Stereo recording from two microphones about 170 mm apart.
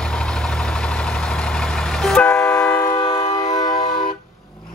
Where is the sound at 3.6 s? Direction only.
25° left (ahead or behind).